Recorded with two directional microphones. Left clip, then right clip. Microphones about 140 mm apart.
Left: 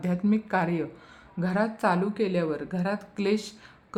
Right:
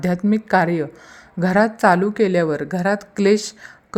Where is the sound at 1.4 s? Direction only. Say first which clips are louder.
Right 11 dB; 45° right (ahead or behind).